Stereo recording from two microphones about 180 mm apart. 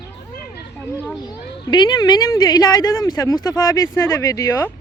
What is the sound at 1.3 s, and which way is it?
Speech, 25° left (ahead or behind).